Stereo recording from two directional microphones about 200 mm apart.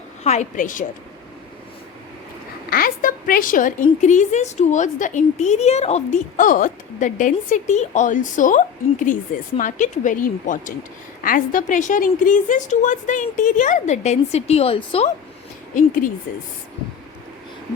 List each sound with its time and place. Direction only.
0.3 s a woman's voice: 40° left (ahead or behind)
2.6 s a woman's voice: 45° left (ahead or behind); by 15.1 s 30° left (ahead or behind)